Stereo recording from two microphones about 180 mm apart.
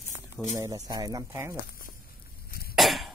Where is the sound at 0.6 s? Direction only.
20° right (ahead or behind).